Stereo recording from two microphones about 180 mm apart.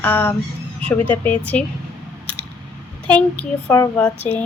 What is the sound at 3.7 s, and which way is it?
Speech, 15° left (ahead or behind).